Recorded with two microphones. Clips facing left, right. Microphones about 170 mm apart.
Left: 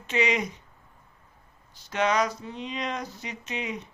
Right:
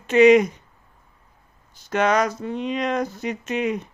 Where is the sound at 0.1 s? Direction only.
50° right (ahead or behind).